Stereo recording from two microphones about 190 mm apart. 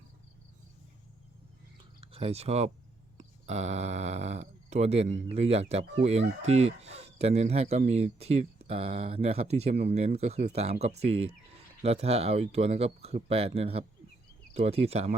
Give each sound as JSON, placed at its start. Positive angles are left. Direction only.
{"t": 2.0, "sound": "speech", "side_deg": -30}